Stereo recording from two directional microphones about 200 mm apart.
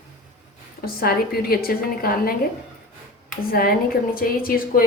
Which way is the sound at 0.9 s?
50° left (ahead or behind).